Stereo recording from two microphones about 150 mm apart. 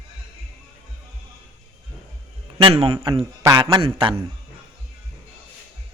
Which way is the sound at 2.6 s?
40° right (ahead or behind).